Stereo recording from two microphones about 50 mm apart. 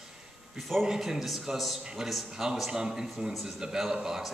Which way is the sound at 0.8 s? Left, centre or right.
Centre.